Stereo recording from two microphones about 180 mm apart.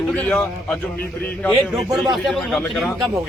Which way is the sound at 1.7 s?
Centre (ahead or behind).